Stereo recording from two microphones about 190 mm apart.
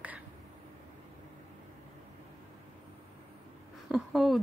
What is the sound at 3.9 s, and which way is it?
Speech, centre (ahead or behind).